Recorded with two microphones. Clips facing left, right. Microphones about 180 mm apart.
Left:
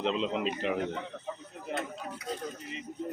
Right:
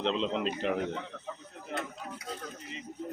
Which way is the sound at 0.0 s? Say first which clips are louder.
Even; 5° left (ahead or behind).